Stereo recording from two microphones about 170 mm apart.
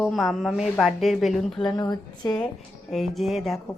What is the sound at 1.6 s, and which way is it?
Speech, 25° left (ahead or behind).